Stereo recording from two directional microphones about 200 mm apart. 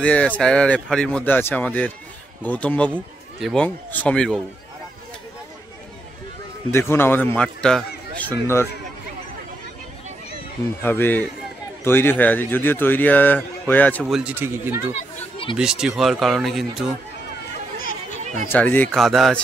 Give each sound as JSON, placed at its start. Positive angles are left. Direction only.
{"t": 0.0, "sound": "a man's voice", "side_deg": 5}
{"t": 6.7, "sound": "a man's voice", "side_deg": 10}
{"t": 10.8, "sound": "a man's voice", "side_deg": 10}
{"t": 15.1, "sound": "a sound", "side_deg": 25}
{"t": 15.5, "sound": "speech", "side_deg": -5}
{"t": 18.2, "sound": "chatter", "side_deg": -35}
{"t": 18.5, "sound": "speech", "side_deg": 10}